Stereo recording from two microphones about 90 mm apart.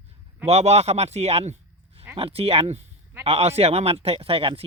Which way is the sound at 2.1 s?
90° right.